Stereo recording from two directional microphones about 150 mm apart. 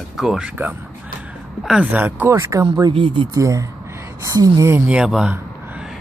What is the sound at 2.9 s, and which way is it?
Speech, 35° right (ahead or behind).